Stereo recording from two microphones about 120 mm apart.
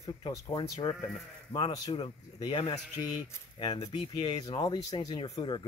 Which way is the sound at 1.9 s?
45° left (ahead or behind).